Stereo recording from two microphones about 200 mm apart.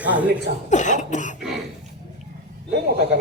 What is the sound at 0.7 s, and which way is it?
Cough, 35° left (ahead or behind).